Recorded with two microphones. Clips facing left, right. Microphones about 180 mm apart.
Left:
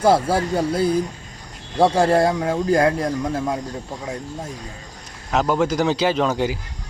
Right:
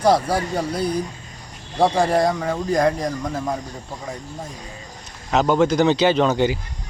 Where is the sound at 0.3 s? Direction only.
25° left (ahead or behind).